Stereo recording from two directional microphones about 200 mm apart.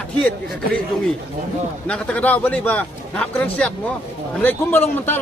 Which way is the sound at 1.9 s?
5° left (ahead or behind).